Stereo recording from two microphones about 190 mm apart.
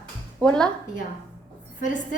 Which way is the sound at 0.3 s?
5° left (ahead or behind).